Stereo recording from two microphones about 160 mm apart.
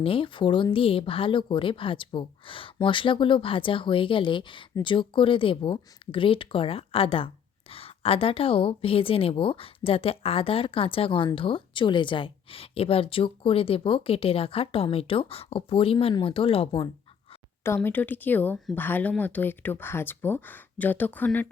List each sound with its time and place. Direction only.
0.0 s a woman's voice: 35° left (ahead or behind)
17.7 s speech: 10° left (ahead or behind)